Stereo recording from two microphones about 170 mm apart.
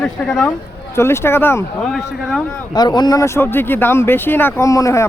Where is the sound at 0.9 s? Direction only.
15° left (ahead or behind).